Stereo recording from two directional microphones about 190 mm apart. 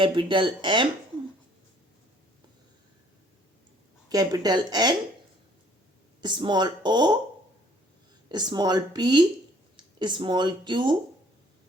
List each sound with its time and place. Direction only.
0.0 s speech: 25° right (ahead or behind)
4.1 s speech: 20° right (ahead or behind)
6.2 s speech: 25° right (ahead or behind)
8.3 s speech: 20° right (ahead or behind)